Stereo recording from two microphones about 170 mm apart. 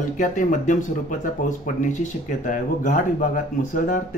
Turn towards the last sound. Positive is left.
turn(degrees=50)  # may be behind; listen again after turning